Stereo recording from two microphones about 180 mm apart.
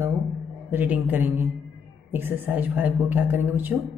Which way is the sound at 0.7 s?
10° right (ahead or behind).